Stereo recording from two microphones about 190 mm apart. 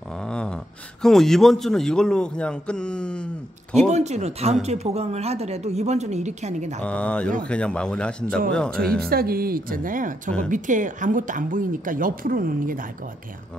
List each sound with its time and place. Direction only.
0.1 s a sound: 5° left (ahead or behind)
1.0 s a man's voice: centre (ahead or behind)
3.9 s a woman's voice: 35° right (ahead or behind)
6.8 s a man's voice: 5° left (ahead or behind)
9.1 s a woman's voice: 50° right (ahead or behind)